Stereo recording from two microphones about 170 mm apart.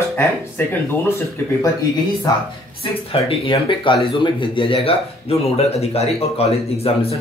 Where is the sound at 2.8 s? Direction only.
30° left (ahead or behind).